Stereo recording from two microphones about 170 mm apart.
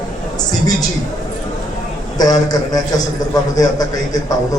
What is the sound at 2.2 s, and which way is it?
A man's voice, 20° left (ahead or behind).